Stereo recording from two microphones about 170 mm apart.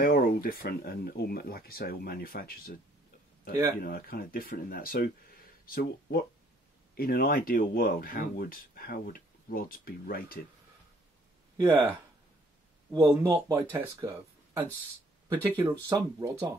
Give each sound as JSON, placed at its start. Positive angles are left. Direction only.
{"t": 0.0, "sound": "speech", "side_deg": 60}
{"t": 3.8, "sound": "speech", "side_deg": 60}
{"t": 11.5, "sound": "speech", "side_deg": -15}
{"t": 12.9, "sound": "speech", "side_deg": -20}